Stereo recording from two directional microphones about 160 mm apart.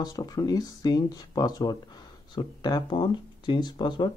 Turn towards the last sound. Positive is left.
turn(degrees=30)  # may be behind; listen again after turning